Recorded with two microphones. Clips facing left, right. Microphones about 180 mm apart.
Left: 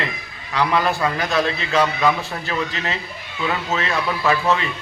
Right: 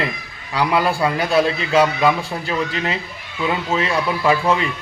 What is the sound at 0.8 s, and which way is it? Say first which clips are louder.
Speech: right 2 dB; 30° right (ahead or behind).